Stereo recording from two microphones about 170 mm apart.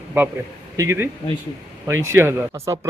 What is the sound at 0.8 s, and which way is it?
A man's voice, 15° right (ahead or behind).